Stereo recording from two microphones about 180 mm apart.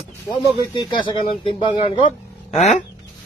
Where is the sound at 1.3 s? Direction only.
30° left (ahead or behind).